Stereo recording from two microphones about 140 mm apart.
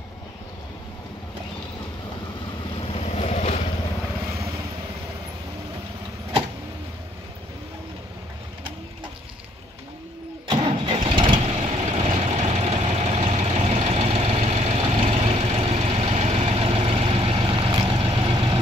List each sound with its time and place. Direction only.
2.9 s vehicle: 50° left (ahead or behind)
10.5 s engine starting: 35° right (ahead or behind)
11.5 s vehicle: 50° right (ahead or behind); by 18.6 s 35° right (ahead or behind)